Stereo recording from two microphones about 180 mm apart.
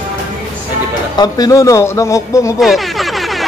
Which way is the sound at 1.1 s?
20° left (ahead or behind).